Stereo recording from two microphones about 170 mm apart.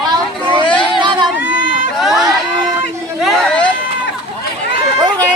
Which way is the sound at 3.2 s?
Centre (ahead or behind).